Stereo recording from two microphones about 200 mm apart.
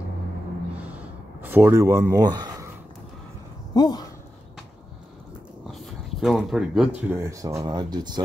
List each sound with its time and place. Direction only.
1.4 s speech: 10° right (ahead or behind)
3.7 s speech: 20° left (ahead or behind)
5.7 s a sound: centre (ahead or behind)
7.1 s speech: 15° right (ahead or behind)